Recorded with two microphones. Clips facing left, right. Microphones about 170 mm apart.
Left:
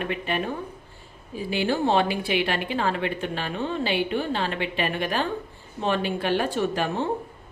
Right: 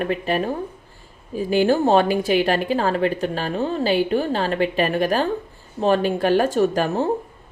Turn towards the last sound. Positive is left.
turn(degrees=-40)  # may be behind; listen again after turning